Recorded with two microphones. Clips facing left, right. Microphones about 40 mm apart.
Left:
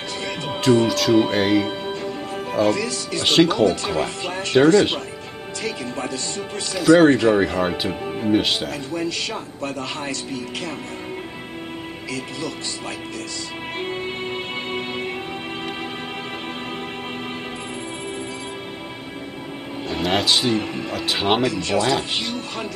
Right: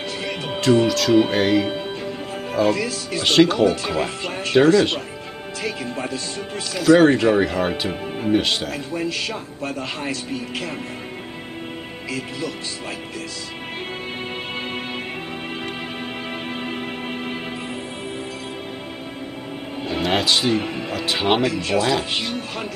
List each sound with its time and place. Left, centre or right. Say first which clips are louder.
0.2 s music: left 1 dB; centre
0.6 s speech: even; centre
2.7 s speech: even; centre
3.3 s speech: right 1 dB; centre
5.6 s speech: even; centre
6.7 s speech: even; centre
7.9 s speech: left 1 dB; centre
8.3 s speech: even; centre
9.6 s speech: even; centre
12.1 s speech: right 1 dB; centre
19.9 s speech: even; centre